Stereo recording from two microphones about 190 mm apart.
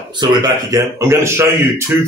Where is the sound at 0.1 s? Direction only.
25° right (ahead or behind).